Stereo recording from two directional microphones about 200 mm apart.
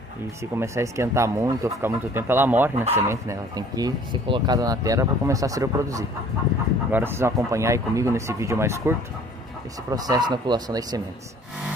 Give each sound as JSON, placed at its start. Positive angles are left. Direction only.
{"t": 0.4, "sound": "speech", "side_deg": -15}